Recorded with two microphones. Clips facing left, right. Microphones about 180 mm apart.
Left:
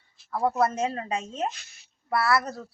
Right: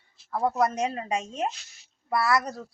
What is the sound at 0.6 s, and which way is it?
Speech, 15° right (ahead or behind).